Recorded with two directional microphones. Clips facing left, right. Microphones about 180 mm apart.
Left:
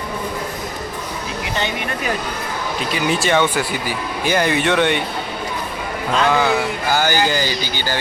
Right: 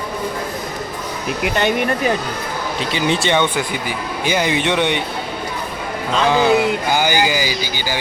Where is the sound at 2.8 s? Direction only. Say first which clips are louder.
Right 1 dB; 30° right (ahead or behind).